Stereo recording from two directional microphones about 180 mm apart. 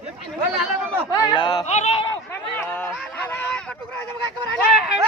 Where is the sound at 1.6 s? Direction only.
40° left (ahead or behind).